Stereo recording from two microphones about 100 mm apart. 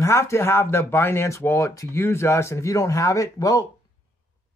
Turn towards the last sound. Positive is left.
turn(degrees=35)  # may be behind; listen again after turning